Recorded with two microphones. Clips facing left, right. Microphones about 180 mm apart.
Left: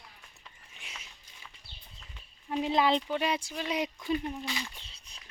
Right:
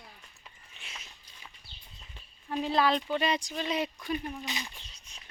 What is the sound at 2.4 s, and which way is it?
Speech, 15° left (ahead or behind).